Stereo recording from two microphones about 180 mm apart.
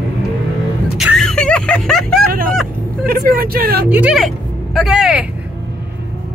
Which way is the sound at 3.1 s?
55° right (ahead or behind).